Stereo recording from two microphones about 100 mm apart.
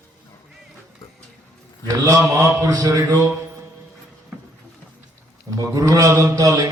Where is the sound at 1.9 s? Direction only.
35° right (ahead or behind).